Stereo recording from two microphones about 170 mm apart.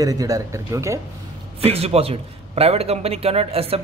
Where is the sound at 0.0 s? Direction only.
20° right (ahead or behind).